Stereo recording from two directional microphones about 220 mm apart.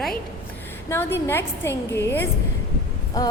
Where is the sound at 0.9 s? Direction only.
10° left (ahead or behind).